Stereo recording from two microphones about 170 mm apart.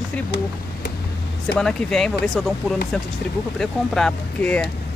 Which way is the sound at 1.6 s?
5° left (ahead or behind).